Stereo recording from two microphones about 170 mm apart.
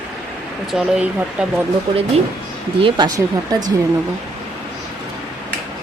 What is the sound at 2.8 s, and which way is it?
Speech, 25° right (ahead or behind).